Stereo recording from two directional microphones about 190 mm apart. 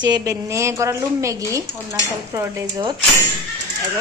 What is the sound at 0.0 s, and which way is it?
A woman's voice, 20° right (ahead or behind).